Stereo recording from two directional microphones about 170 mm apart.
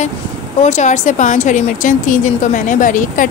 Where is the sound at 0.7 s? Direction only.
40° left (ahead or behind).